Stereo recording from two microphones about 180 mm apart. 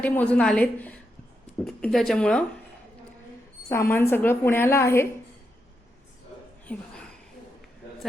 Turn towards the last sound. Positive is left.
turn(degrees=5)  # may be behind; listen again after turning